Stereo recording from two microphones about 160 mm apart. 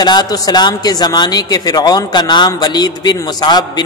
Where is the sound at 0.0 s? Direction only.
25° left (ahead or behind).